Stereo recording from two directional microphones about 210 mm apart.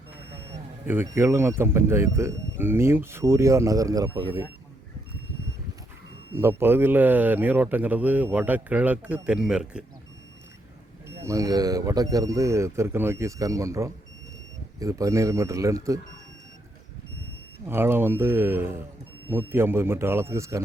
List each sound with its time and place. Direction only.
0.9 s speech: 10° right (ahead or behind)
6.3 s speech: 10° right (ahead or behind)
11.2 s speech: 15° right (ahead or behind)
17.7 s speech: 10° right (ahead or behind)